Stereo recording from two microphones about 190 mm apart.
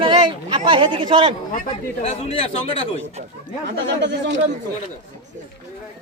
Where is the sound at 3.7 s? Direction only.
65° right (ahead or behind).